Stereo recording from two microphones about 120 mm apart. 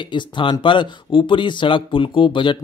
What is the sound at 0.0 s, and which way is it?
Speech, 40° left (ahead or behind).